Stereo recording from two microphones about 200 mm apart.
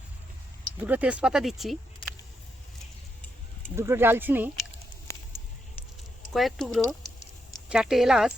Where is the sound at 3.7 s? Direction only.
10° right (ahead or behind).